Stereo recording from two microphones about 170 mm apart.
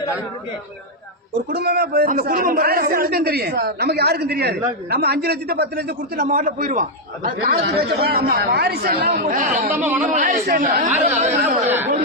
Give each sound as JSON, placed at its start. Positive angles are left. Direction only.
{"t": 1.5, "sound": "a man's voice", "side_deg": -70}
{"t": 7.3, "sound": "a man's voice", "side_deg": -70}
{"t": 9.7, "sound": "speech", "side_deg": -10}
{"t": 10.0, "sound": "speech", "side_deg": -50}